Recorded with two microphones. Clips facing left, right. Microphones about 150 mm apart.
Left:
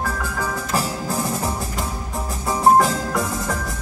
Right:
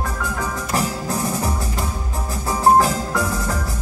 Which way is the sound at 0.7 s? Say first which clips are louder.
Right 3 dB; centre (ahead or behind).